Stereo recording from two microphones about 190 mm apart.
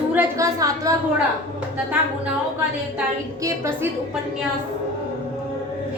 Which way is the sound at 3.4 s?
15° right (ahead or behind).